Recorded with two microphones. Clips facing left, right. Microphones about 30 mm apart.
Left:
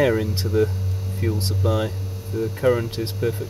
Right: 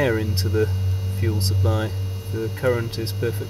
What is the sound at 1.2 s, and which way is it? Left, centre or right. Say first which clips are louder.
Speech: left 1 dB; centre.